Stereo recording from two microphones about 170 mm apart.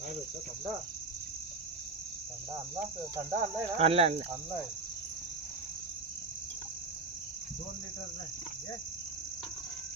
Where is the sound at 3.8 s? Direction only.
35° right (ahead or behind).